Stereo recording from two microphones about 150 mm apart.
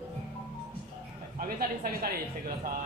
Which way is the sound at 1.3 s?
70° right (ahead or behind).